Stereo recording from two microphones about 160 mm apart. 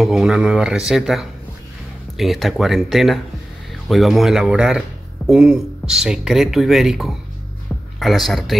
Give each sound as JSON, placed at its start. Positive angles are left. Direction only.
{"t": 0.0, "sound": "speech", "side_deg": -5}